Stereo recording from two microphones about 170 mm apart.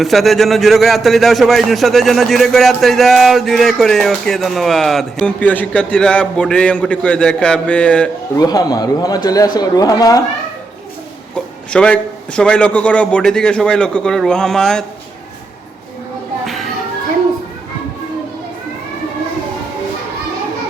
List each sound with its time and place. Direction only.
0.0 s a man's voice: centre (ahead or behind)
8.4 s speech: 20° left (ahead or behind)
11.7 s a man's voice: 5° left (ahead or behind)